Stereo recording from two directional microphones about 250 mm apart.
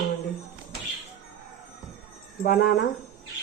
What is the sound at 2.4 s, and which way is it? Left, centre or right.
Speech, left.